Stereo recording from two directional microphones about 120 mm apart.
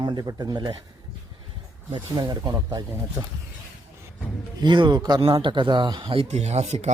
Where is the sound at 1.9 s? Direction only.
35° right (ahead or behind).